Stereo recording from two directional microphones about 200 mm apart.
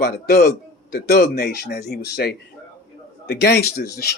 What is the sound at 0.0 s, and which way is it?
Speech, 50° left (ahead or behind).